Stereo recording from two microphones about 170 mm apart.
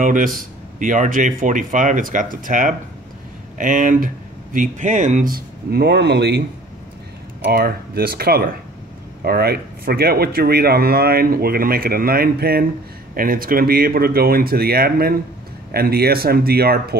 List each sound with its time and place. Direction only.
0.0 s speech: 50° right (ahead or behind); by 6.4 s 80° right
7.4 s speech: 65° right (ahead or behind)